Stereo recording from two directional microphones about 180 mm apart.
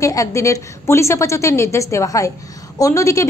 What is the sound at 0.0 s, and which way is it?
A woman's voice, 20° left (ahead or behind).